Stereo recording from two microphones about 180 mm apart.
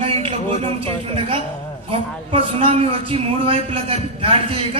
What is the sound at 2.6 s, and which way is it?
A man's voice, 30° right (ahead or behind).